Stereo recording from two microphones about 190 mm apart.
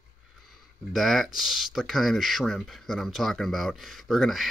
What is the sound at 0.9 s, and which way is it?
Speech, centre (ahead or behind).